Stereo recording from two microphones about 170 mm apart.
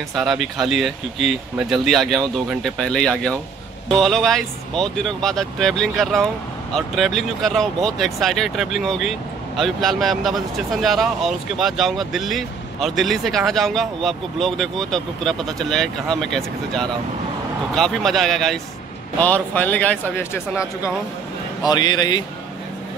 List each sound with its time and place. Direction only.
0.1 s a man's voice: centre (ahead or behind); by 22.2 s 25° left (ahead or behind)